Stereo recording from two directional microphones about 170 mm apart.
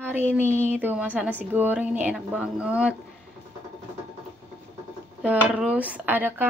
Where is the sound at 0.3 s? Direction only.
15° right (ahead or behind).